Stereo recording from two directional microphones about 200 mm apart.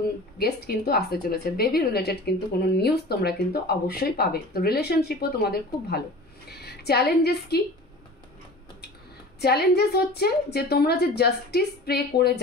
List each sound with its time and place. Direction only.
0.4 s a woman's voice: 50° left (ahead or behind)
9.4 s speech: 55° left (ahead or behind)